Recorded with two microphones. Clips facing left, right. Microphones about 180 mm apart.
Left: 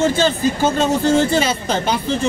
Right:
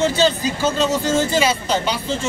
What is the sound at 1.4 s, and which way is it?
Speech, 50° left (ahead or behind).